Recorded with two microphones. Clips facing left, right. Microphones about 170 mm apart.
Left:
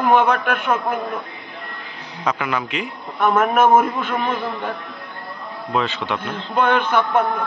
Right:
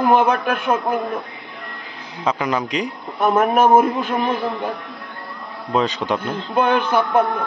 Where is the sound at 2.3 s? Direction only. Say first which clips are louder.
Right 2 dB; 35° right (ahead or behind).